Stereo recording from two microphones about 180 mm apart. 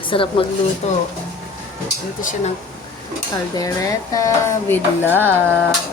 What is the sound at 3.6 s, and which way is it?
A woman's voice, 20° left (ahead or behind).